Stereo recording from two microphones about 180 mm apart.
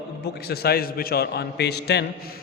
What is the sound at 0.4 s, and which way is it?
A man's voice, 60° left (ahead or behind).